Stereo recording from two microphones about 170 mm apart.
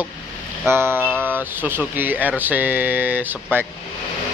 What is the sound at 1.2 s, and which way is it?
Speech, 10° right (ahead or behind).